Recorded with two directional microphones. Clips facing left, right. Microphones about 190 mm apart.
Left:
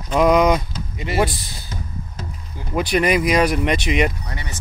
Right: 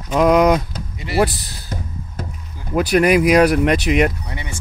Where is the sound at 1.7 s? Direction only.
60° right (ahead or behind).